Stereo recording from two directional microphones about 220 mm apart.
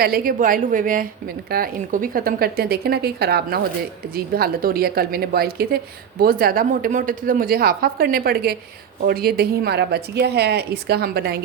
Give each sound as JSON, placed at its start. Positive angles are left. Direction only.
{"t": 0.0, "sound": "a woman's voice", "side_deg": -40}